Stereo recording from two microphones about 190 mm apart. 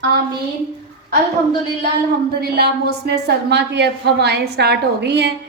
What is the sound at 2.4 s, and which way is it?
A woman's voice, 55° right (ahead or behind).